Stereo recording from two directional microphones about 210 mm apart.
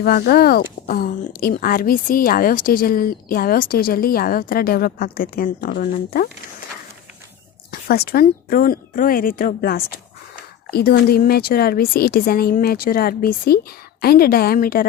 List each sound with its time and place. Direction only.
0.0 s speech: 45° left (ahead or behind)
7.7 s speech: 45° left (ahead or behind)